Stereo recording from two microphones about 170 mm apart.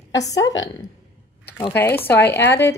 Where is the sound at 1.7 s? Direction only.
10° left (ahead or behind).